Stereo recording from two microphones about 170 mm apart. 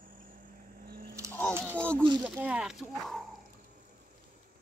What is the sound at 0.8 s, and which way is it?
Camera, 60° right (ahead or behind).